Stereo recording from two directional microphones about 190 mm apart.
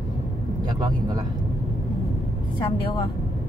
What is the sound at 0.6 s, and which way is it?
Speech, 20° right (ahead or behind).